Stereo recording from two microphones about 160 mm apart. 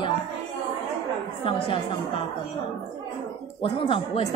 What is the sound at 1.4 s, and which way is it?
Speech, 35° left (ahead or behind).